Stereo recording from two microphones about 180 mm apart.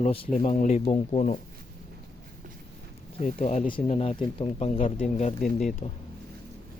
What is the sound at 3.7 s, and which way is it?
Speech, 35° left (ahead or behind).